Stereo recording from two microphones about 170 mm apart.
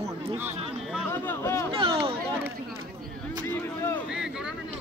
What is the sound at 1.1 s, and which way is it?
Speech, 15° left (ahead or behind).